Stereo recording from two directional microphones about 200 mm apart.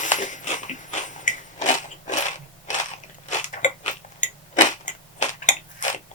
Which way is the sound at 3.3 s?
40° left (ahead or behind).